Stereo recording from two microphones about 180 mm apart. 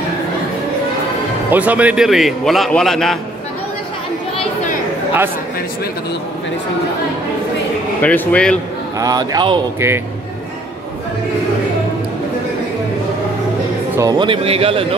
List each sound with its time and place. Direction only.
1.5 s a man's voice: 10° right (ahead or behind)
8.0 s speech: 10° left (ahead or behind)
9.0 s a man's voice: 20° right (ahead or behind)
9.8 s a man's voice: 15° right (ahead or behind)
13.9 s speech: 20° right (ahead or behind)